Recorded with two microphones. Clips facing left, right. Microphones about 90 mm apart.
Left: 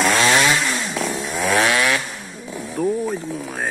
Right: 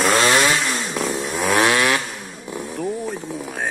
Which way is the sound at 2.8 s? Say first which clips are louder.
Left 5 dB; 5° left (ahead or behind).